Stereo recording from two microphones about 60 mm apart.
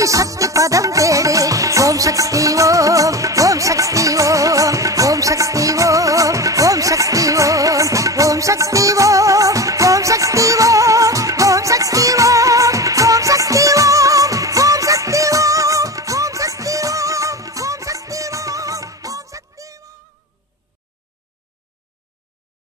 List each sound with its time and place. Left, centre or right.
0.0 s music: right